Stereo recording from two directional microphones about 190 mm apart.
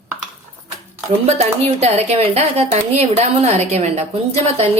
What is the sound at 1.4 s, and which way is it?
A woman's voice, 35° right (ahead or behind).